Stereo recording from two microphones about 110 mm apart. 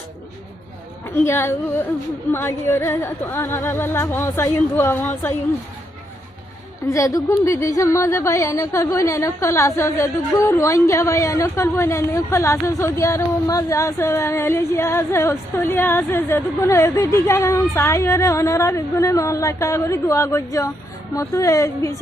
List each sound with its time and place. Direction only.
1.1 s speech: 20° left (ahead or behind)
6.9 s speech: 30° left (ahead or behind)